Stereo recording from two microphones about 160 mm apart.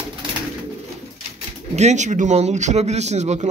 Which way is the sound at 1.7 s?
45° right (ahead or behind).